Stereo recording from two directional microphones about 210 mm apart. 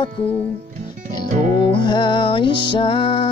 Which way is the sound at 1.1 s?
20° left (ahead or behind).